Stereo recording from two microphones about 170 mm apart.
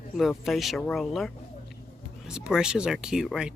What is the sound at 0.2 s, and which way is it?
Speech, centre (ahead or behind).